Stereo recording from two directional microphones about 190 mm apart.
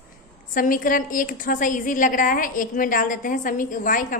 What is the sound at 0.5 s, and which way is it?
A woman's voice, 45° left (ahead or behind).